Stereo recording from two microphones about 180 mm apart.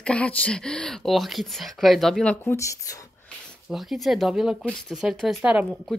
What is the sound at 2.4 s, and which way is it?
Speech, 15° left (ahead or behind).